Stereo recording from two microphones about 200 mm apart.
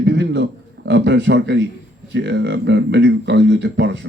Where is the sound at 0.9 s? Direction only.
60° right (ahead or behind).